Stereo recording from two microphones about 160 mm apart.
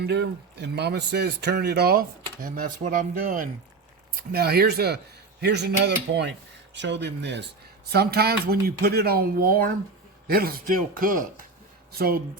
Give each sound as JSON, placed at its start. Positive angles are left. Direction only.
{"t": 0.0, "sound": "speech", "side_deg": -90}
{"t": 4.3, "sound": "speech", "side_deg": -75}
{"t": 7.9, "sound": "a man's voice", "side_deg": -80}
{"t": 11.9, "sound": "speech", "side_deg": -70}